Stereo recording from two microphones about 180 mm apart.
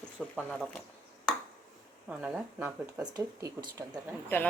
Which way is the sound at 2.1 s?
5° right (ahead or behind).